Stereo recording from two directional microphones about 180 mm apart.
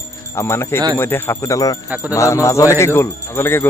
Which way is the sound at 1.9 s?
10° right (ahead or behind).